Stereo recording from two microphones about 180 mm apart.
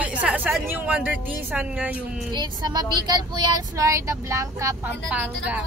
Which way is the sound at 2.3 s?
25° right (ahead or behind).